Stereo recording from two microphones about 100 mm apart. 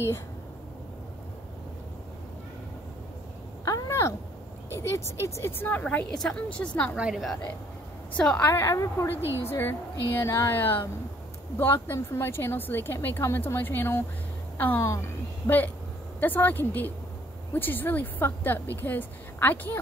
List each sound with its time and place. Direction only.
3.6 s a sound: 35° left (ahead or behind)
4.6 s a woman's voice: 25° left (ahead or behind)
8.2 s a woman's voice: 10° left (ahead or behind)
8.5 s a woman's voice: 25° left (ahead or behind)